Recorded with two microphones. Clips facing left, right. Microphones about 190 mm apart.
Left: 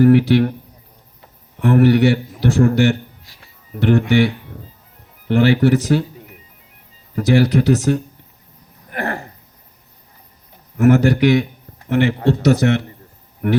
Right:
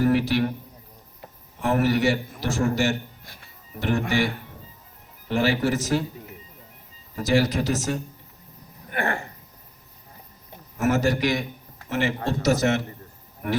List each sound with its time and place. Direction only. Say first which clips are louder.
0.0 s a man's voice: left 9 dB; 60° left (ahead or behind)
1.5 s a man's voice: left 9 dB; 60° left (ahead or behind)
3.2 s music: right 1 dB; 55° right (ahead or behind)
3.8 s a man's voice: left 9 dB; 60° left (ahead or behind)
5.3 s a man's voice: left 8 dB; 60° left (ahead or behind)
7.2 s a man's voice: left 7 dB; 60° left (ahead or behind)
8.9 s a sound: left 3 dB; 40° left (ahead or behind)
10.8 s a man's voice: left 9 dB; 60° left (ahead or behind)